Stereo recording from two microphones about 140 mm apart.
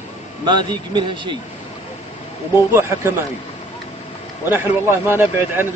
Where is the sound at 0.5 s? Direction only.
35° right (ahead or behind).